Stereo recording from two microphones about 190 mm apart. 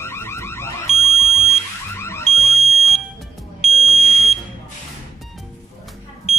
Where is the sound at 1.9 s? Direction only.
15° left (ahead or behind).